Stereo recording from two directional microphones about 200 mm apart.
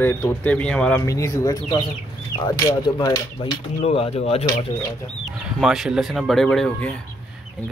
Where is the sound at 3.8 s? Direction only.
30° left (ahead or behind).